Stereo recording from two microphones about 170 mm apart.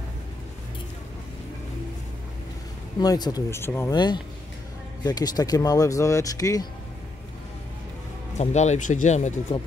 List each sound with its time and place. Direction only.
3.0 s speech: 25° left (ahead or behind)
3.9 s speech: 25° left (ahead or behind)
8.4 s speech: 40° left (ahead or behind)